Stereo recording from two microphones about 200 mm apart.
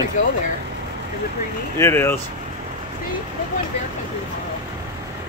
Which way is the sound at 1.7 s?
10° left (ahead or behind).